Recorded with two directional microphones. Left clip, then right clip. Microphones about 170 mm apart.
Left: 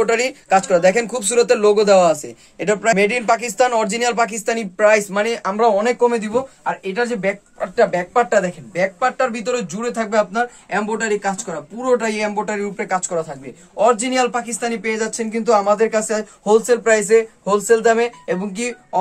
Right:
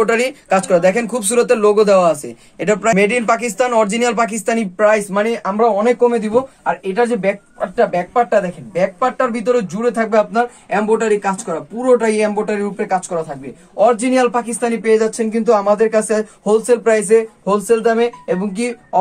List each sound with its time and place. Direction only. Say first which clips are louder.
0.0 s speech: right 2 dB; 5° left (ahead or behind)
8.1 s a woman's voice: right 2 dB; 30° left (ahead or behind)
8.4 s speech: right 2 dB; 10° left (ahead or behind)